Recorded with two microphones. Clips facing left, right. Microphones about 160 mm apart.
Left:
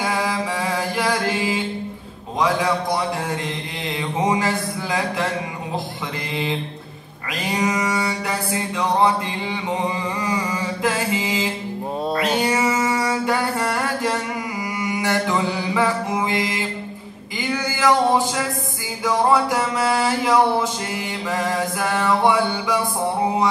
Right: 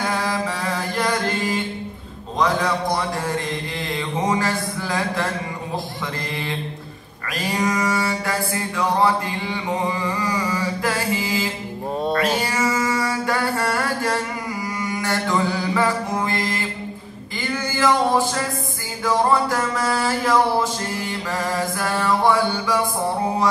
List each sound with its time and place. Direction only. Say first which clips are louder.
0.0 s mantra: even; 10° left (ahead or behind)
7.4 s mantra: even; 20° left (ahead or behind)
12.2 s music: left 1 dB; 20° left (ahead or behind)
14.8 s mantra: left 3 dB; 15° left (ahead or behind)